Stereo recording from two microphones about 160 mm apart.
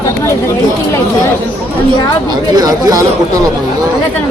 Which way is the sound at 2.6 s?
25° right (ahead or behind).